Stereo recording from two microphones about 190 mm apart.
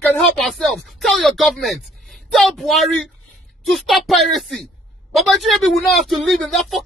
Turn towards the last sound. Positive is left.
turn(degrees=0)  # may be behind; listen again after turning